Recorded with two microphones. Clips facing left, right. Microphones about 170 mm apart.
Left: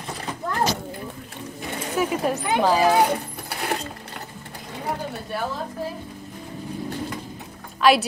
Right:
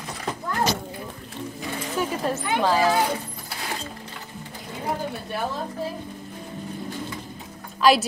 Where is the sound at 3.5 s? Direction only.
65° left (ahead or behind).